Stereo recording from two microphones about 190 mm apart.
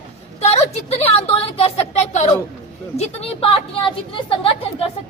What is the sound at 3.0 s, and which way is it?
A woman's voice, 30° left (ahead or behind).